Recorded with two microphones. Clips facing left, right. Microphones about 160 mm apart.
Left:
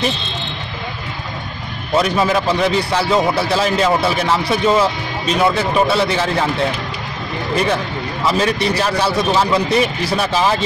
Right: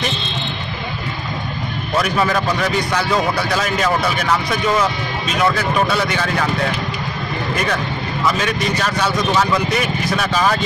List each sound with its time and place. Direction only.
2.0 s a man's voice: 20° left (ahead or behind)
8.3 s a man's voice: 35° left (ahead or behind)